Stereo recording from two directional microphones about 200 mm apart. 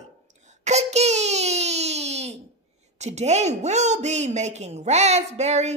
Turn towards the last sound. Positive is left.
turn(degrees=-35)  # may be behind; listen again after turning